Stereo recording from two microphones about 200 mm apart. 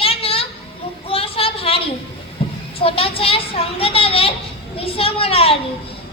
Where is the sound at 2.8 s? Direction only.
30° left (ahead or behind).